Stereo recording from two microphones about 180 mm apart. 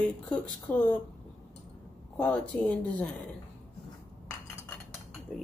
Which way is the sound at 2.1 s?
5° left (ahead or behind).